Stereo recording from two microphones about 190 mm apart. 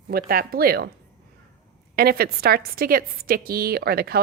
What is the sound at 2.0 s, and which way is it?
A woman's voice, 55° right (ahead or behind).